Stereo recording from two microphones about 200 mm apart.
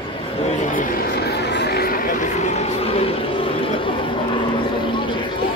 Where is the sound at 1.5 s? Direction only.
55° left (ahead or behind).